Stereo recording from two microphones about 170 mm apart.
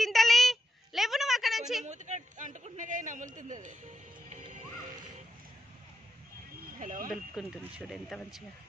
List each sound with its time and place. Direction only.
0.0 s a sound: centre (ahead or behind)
1.9 s a man's voice: 45° right (ahead or behind)
4.3 s music: 45° right (ahead or behind)
6.8 s a man's voice: 50° right (ahead or behind)
7.3 s speech: 5° right (ahead or behind)